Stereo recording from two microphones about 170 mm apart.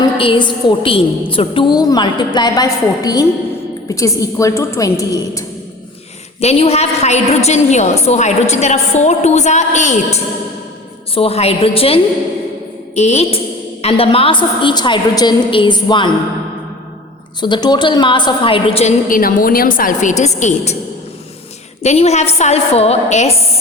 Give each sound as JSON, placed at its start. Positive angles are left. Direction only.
{"t": 0.2, "sound": "a woman's voice", "side_deg": 30}
{"t": 6.4, "sound": "a woman's voice", "side_deg": 40}
{"t": 17.4, "sound": "a woman's voice", "side_deg": 25}
{"t": 19.0, "sound": "a woman's voice", "side_deg": 55}
{"t": 21.8, "sound": "a woman's voice", "side_deg": 40}